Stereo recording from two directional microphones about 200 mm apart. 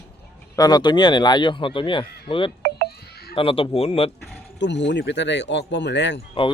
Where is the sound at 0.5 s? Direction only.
20° left (ahead or behind).